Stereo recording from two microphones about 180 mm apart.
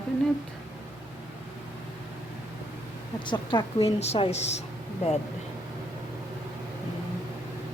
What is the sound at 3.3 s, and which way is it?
A woman's voice, 30° left (ahead or behind).